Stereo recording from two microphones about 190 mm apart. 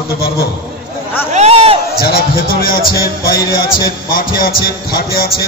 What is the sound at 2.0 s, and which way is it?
A man's voice, 50° left (ahead or behind).